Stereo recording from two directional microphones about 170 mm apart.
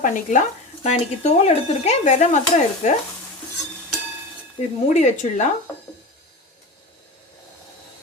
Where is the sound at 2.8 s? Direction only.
45° left (ahead or behind).